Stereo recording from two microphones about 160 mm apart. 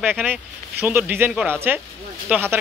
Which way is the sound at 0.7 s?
10° right (ahead or behind).